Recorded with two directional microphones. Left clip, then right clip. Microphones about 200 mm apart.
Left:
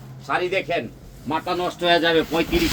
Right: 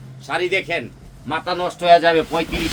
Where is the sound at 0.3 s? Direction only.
55° right (ahead or behind).